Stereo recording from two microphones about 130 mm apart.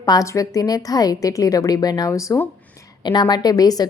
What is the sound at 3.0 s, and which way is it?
Speech, 35° left (ahead or behind).